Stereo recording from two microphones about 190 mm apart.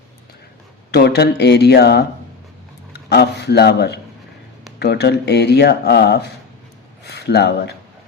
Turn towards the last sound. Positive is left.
turn(degrees=60)  # may be behind; listen again after turning